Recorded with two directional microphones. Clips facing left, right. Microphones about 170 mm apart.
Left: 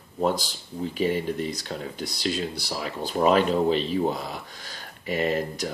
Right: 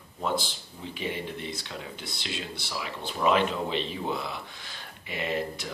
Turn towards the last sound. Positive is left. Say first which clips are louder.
# left 5 dB
turn(degrees=40)  # may be behind; listen again after turning